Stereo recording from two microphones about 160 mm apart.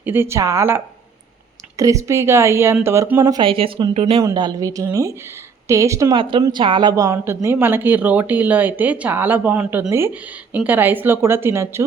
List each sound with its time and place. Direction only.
0.0 s speech: 15° right (ahead or behind)
1.8 s speech: 20° right (ahead or behind); by 4.2 s 40° right (ahead or behind)
4.2 s speech: 25° right (ahead or behind)
6.1 s speech: 30° right (ahead or behind)